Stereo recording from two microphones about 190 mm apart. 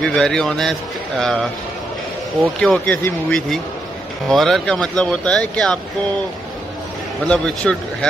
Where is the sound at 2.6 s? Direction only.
5° left (ahead or behind).